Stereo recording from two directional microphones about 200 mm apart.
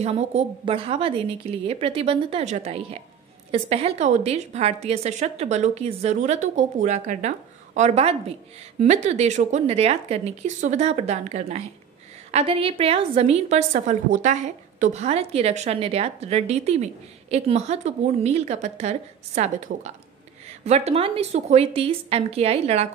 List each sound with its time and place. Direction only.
0.0 s a woman's voice: 30° right (ahead or behind)